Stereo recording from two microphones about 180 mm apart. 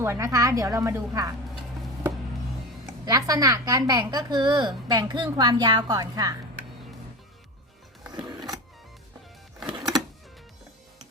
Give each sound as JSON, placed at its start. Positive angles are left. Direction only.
{"t": 0.0, "sound": "a woman's voice", "side_deg": -15}
{"t": 3.1, "sound": "a woman's voice", "side_deg": -20}
{"t": 8.1, "sound": "power windows", "side_deg": -25}